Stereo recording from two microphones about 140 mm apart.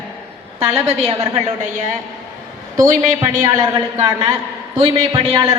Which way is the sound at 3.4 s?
25° right (ahead or behind).